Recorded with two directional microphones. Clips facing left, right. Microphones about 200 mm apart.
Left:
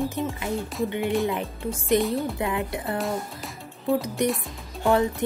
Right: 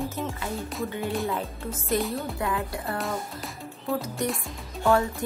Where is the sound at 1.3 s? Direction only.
15° left (ahead or behind).